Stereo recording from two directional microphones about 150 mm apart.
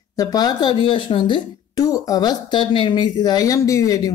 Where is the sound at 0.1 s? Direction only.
25° left (ahead or behind).